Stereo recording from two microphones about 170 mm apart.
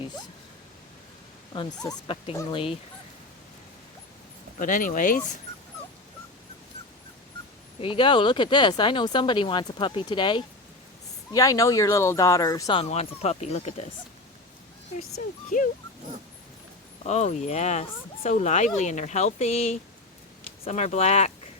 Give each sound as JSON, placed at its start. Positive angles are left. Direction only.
{"t": 1.5, "sound": "speech", "side_deg": 25}
{"t": 4.6, "sound": "speech", "side_deg": 50}
{"t": 7.8, "sound": "speech", "side_deg": 30}
{"t": 12.7, "sound": "speech", "side_deg": 40}
{"t": 15.4, "sound": "speech", "side_deg": 50}
{"t": 17.1, "sound": "speech", "side_deg": 40}